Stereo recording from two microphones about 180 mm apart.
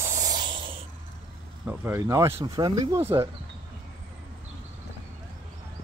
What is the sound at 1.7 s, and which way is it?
Speech, 15° right (ahead or behind).